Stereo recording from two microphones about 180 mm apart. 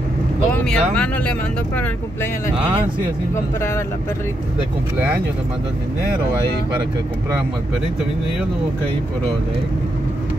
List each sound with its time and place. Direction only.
0.7 s speech: 5° left (ahead or behind)
4.9 s speech: 10° right (ahead or behind)